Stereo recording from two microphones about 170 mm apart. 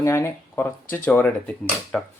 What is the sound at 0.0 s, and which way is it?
Speech, 15° left (ahead or behind).